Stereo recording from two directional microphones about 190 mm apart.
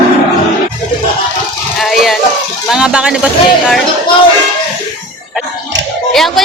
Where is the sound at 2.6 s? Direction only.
5° right (ahead or behind).